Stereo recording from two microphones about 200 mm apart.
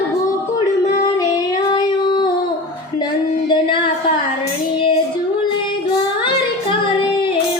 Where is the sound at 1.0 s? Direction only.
20° left (ahead or behind).